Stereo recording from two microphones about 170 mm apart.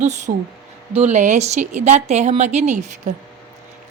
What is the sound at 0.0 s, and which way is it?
A woman's voice, 45° right (ahead or behind).